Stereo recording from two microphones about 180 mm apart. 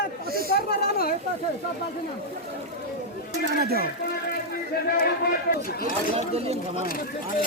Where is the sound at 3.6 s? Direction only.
60° right (ahead or behind).